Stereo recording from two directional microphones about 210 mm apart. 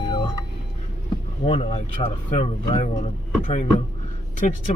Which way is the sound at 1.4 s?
30° left (ahead or behind).